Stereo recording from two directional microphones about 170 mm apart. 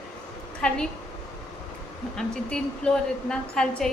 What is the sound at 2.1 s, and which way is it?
A woman's voice, 5° left (ahead or behind).